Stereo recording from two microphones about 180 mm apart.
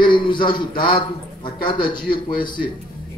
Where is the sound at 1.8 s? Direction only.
55° left (ahead or behind).